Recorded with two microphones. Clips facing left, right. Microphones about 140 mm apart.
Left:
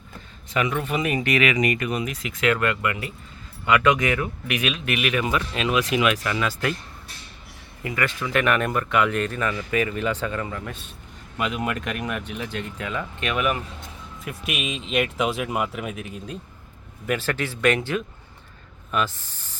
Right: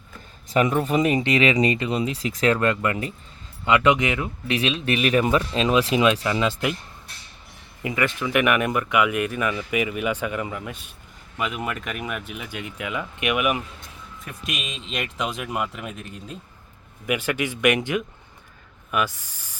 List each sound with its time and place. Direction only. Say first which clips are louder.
0.5 s speech: right 4 dB; 40° right (ahead or behind)
1.0 s speech: right 2 dB; 25° right (ahead or behind)
3.7 s speech: right 1 dB; 20° right (ahead or behind)
7.8 s speech: right 2 dB; 20° right (ahead or behind)
11.3 s speech: left 2 dB; centre (ahead or behind)
14.3 s speech: left 4 dB; 5° left (ahead or behind)
17.1 s speech: right 1 dB; 15° right (ahead or behind)